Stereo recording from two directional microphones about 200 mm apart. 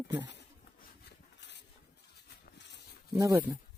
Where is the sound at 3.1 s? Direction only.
15° right (ahead or behind).